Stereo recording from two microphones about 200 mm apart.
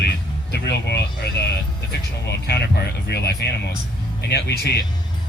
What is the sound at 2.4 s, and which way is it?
Speech, 55° left (ahead or behind).